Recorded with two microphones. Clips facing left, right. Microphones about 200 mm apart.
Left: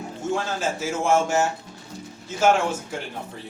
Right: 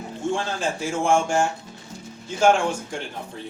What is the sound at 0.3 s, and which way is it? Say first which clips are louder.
A man's voice: even; 5° left (ahead or behind).